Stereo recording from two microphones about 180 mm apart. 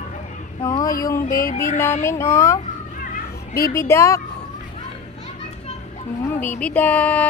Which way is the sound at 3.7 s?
15° left (ahead or behind).